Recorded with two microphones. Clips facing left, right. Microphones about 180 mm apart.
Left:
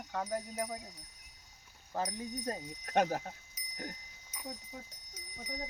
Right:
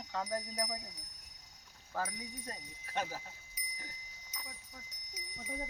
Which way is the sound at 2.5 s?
50° left (ahead or behind).